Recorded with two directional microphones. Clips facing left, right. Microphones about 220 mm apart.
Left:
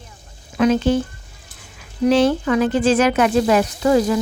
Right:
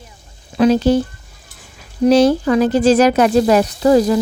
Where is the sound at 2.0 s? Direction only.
40° right (ahead or behind).